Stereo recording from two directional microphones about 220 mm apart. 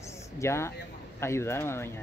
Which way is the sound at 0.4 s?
10° left (ahead or behind).